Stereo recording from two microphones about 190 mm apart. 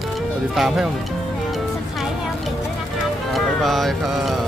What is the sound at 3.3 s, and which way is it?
Speech, centre (ahead or behind).